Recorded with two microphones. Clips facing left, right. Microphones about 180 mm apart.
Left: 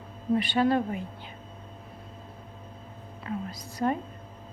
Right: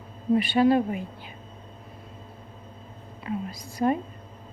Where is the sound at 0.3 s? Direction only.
10° right (ahead or behind).